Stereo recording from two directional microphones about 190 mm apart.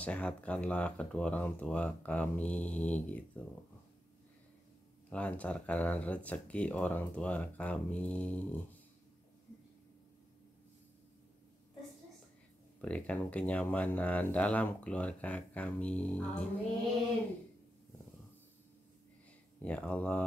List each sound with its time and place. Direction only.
0.0 s speech: 5° left (ahead or behind)
5.1 s speech: 5° left (ahead or behind)
12.8 s speech: 5° left (ahead or behind)
19.6 s speech: 5° left (ahead or behind)